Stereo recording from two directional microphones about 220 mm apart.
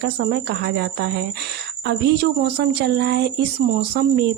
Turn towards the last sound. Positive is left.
turn(degrees=-50)  # may be behind; listen again after turning